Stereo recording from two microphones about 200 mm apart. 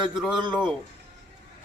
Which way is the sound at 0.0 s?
Centre (ahead or behind).